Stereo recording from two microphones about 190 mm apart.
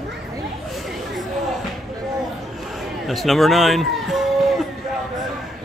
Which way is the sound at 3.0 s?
Centre (ahead or behind).